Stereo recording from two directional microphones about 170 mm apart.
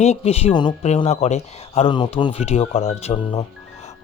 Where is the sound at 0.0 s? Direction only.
40° left (ahead or behind).